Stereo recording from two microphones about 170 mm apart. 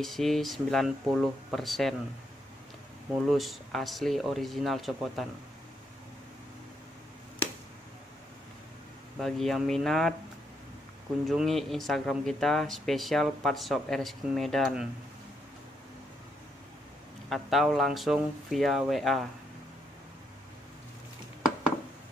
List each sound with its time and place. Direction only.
0.0 s speech: centre (ahead or behind)
3.1 s speech: centre (ahead or behind)
9.2 s speech: centre (ahead or behind)
11.2 s speech: centre (ahead or behind)
17.3 s speech: centre (ahead or behind)